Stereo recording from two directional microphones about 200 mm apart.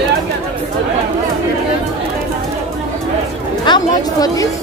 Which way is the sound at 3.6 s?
20° left (ahead or behind).